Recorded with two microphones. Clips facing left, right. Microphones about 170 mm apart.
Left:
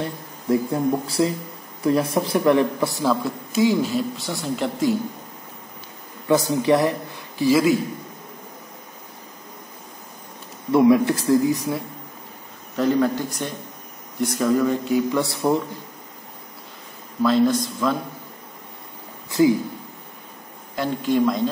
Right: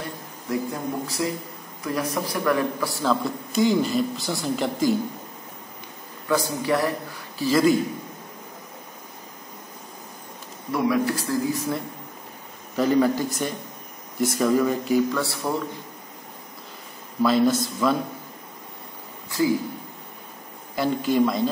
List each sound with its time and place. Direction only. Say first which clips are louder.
0.5 s speech: left 7 dB; 30° left (ahead or behind)
3.1 s speech: left 1 dB; 5° left (ahead or behind)
6.2 s a man's voice: left 5 dB; 20° left (ahead or behind)
10.7 s speech: left 7 dB; 25° left (ahead or behind)
12.7 s speech: even; centre (ahead or behind)
15.1 s speech: left 5 dB; 20° left (ahead or behind)
17.2 s speech: left 1 dB; 5° right (ahead or behind)
20.7 s speech: even; 5° right (ahead or behind)